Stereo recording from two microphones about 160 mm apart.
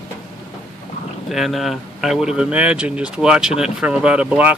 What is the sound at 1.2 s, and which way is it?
Speech, centre (ahead or behind).